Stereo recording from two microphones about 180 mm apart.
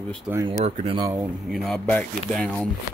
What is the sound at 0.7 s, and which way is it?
Speech, 45° right (ahead or behind).